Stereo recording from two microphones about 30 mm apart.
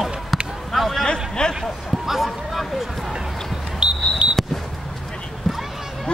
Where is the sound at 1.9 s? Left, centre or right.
Centre.